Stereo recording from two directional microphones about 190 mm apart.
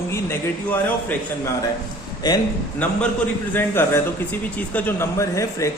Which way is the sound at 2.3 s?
20° left (ahead or behind).